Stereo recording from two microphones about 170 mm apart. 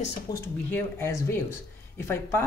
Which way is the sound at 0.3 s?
15° left (ahead or behind).